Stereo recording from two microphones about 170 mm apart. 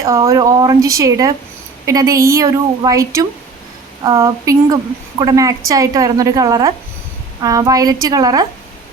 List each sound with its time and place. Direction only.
0.3 s a woman's voice: 20° right (ahead or behind)